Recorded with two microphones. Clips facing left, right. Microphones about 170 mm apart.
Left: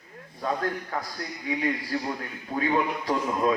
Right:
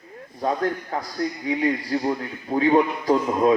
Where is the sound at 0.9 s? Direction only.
30° right (ahead or behind).